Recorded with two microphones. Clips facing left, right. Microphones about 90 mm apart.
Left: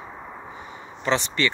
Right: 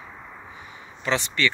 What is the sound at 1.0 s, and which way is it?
Speech, 25° left (ahead or behind).